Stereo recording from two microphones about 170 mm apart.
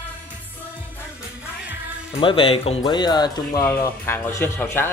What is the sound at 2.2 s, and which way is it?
Speech, 30° left (ahead or behind).